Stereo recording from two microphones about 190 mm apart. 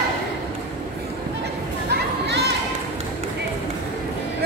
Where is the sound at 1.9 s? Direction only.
60° right (ahead or behind).